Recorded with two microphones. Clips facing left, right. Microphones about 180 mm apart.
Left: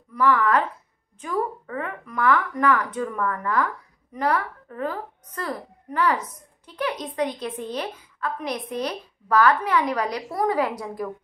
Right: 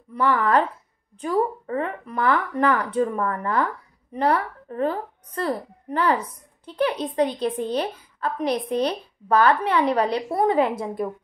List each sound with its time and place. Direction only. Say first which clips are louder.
0.1 s speech: even; 30° right (ahead or behind)